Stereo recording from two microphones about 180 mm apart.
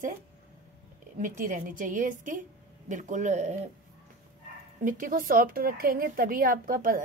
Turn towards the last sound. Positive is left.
turn(degrees=-50)  # may be behind; listen again after turning